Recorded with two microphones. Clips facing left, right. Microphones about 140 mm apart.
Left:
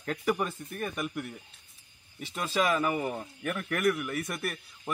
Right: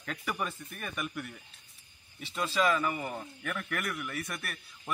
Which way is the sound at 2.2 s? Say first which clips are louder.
Left 1 dB; 45° left (ahead or behind).